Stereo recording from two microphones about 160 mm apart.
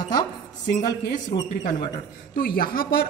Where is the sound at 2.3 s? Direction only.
65° left (ahead or behind).